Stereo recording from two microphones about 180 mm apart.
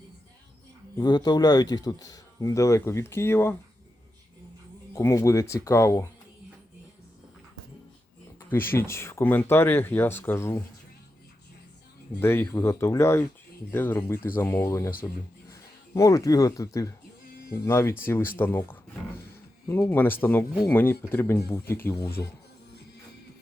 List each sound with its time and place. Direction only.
0.9 s speech: 25° left (ahead or behind)
4.9 s speech: 15° left (ahead or behind)
8.4 s speech: 10° left (ahead or behind)
12.2 s speech: 15° left (ahead or behind)